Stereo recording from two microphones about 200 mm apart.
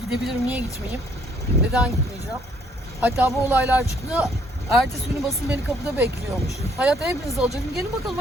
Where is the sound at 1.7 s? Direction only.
5° right (ahead or behind).